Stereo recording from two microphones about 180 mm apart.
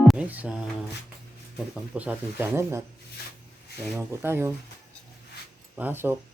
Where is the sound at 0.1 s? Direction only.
5° right (ahead or behind).